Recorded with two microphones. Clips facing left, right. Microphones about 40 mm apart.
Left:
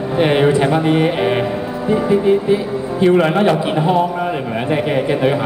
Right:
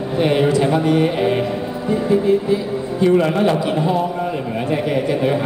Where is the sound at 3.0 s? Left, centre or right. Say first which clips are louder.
Left 2 dB; left.